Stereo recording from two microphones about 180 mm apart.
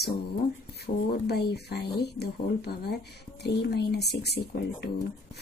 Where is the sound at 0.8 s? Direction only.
65° left (ahead or behind).